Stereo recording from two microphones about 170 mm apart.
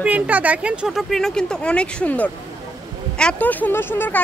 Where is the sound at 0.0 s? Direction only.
10° right (ahead or behind).